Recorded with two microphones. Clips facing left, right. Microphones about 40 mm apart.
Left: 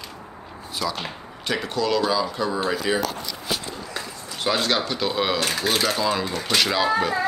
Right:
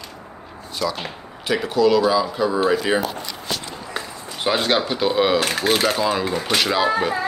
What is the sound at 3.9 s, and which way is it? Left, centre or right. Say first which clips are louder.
Speech: right 3 dB; centre.